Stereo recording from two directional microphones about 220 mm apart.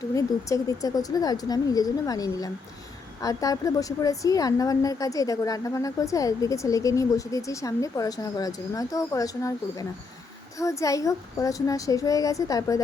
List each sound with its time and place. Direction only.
0.1 s a woman's voice: 15° left (ahead or behind)